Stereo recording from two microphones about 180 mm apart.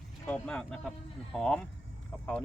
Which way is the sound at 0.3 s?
5° left (ahead or behind).